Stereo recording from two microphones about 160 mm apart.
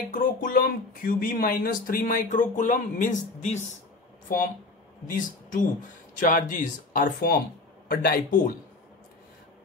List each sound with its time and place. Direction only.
0.1 s speech: 60° left (ahead or behind)
5.0 s speech: 55° left (ahead or behind)